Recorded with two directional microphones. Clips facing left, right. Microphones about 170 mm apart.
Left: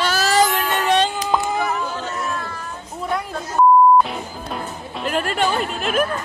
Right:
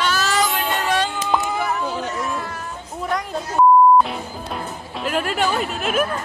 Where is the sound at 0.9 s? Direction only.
20° left (ahead or behind).